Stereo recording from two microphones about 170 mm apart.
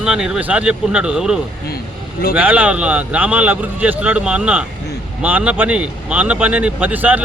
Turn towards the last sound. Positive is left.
turn(degrees=-10)  # may be behind; listen again after turning